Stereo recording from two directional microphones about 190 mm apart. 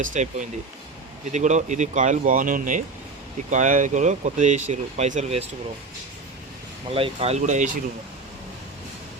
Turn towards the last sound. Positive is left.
turn(degrees=-40)  # may be behind; listen again after turning